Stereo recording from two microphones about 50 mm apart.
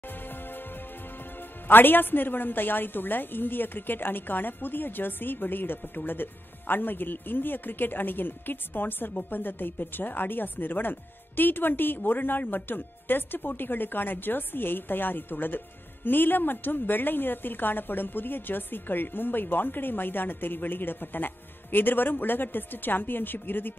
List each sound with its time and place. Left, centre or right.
0.3 s music: left
1.7 s speech: left